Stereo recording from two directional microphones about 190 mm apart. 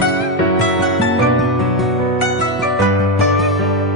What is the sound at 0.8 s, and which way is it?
Music, centre (ahead or behind).